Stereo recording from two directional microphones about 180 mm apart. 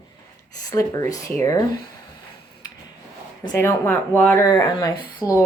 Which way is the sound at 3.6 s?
15° left (ahead or behind).